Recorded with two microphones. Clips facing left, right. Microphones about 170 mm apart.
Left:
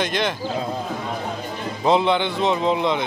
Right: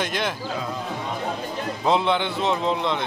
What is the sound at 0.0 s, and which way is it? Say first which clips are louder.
Speech: left 3 dB; 5° right (ahead or behind).